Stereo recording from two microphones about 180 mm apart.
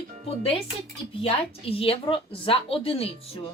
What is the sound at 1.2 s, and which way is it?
A woman's voice, 30° left (ahead or behind).